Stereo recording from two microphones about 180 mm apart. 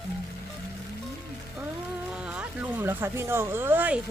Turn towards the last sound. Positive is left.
turn(degrees=-10)  # may be behind; listen again after turning